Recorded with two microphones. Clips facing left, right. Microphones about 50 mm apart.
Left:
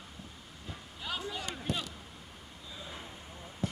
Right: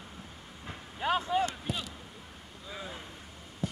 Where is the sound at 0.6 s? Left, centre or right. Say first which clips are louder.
Right 10 dB; right.